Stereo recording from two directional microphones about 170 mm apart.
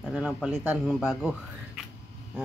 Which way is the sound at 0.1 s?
Centre (ahead or behind).